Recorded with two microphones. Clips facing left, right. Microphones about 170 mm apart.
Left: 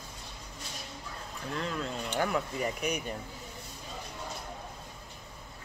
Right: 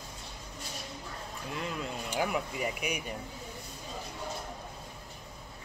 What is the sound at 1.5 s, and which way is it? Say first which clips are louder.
Speech: left 2 dB; 10° right (ahead or behind).